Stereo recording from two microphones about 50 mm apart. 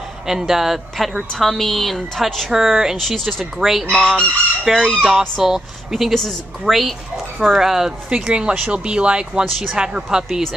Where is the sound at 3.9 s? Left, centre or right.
Centre.